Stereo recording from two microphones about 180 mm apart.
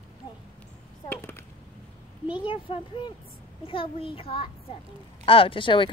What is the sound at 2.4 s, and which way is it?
Speech, 30° left (ahead or behind).